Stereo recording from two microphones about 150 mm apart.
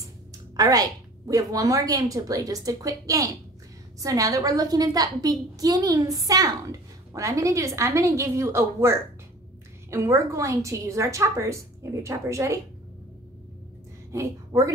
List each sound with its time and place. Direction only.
0.6 s a woman's voice: 25° right (ahead or behind)
14.1 s a woman's voice: 20° right (ahead or behind)